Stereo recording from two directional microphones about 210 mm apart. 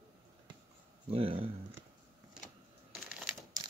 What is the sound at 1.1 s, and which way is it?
Speech, 25° right (ahead or behind).